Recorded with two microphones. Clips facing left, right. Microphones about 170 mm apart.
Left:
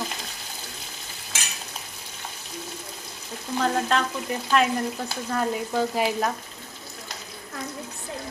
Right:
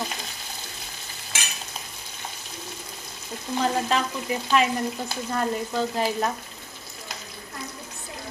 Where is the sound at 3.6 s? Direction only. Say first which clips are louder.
Left 1 dB; 5° right (ahead or behind).